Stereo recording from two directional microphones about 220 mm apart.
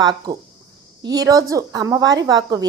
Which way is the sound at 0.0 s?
20° right (ahead or behind).